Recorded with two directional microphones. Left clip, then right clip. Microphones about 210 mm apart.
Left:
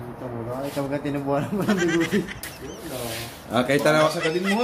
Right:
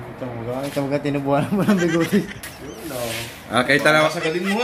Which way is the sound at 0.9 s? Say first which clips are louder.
Right 6 dB; 55° right (ahead or behind).